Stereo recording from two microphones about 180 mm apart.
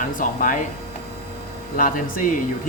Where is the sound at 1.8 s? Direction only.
50° left (ahead or behind).